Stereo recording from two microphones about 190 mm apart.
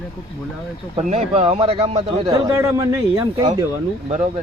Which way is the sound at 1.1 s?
35° right (ahead or behind).